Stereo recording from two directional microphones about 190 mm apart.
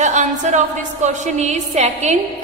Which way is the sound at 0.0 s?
40° right (ahead or behind).